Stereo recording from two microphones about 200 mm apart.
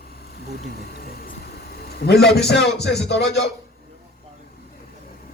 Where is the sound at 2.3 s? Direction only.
55° left (ahead or behind).